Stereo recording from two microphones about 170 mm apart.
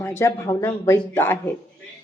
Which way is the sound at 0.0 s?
15° left (ahead or behind).